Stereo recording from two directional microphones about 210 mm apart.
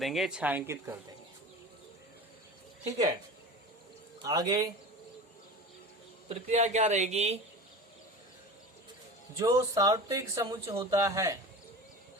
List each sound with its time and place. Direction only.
0.0 s speech: centre (ahead or behind)
4.2 s speech: 15° right (ahead or behind)
6.2 s speech: 35° right (ahead or behind)
9.4 s speech: 15° right (ahead or behind)